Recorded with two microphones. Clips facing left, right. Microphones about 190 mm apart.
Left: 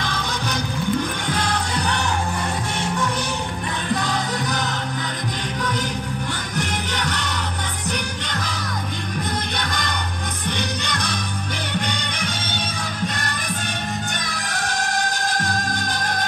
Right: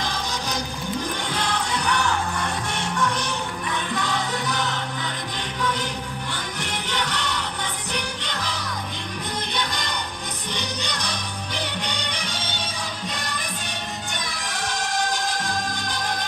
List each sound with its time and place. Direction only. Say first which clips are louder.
0.0 s music: left 2 dB; 60° left (ahead or behind)
1.3 s music: left 2 dB; 40° left (ahead or behind)
3.9 s music: left 5 dB; 40° left (ahead or behind)
6.5 s music: left 4 dB; 45° left (ahead or behind)
14.3 s music: left 3 dB; 45° left (ahead or behind)